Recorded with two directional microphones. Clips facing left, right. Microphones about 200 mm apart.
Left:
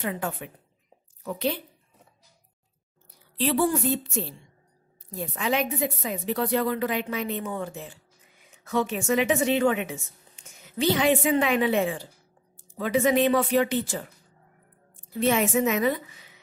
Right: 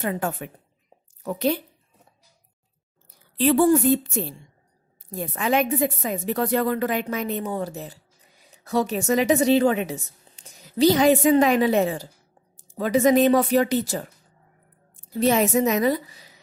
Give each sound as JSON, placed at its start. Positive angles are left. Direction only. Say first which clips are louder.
{"t": 0.0, "sound": "a woman's voice", "louder": "right 4 dB", "side_deg": -45}
{"t": 3.3, "sound": "a woman's voice", "louder": "right 6 dB", "side_deg": -50}
{"t": 15.1, "sound": "a woman's voice", "louder": "right 3 dB", "side_deg": -40}